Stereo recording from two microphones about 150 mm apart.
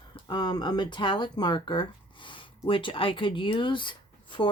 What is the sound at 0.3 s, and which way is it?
Speech, 30° left (ahead or behind).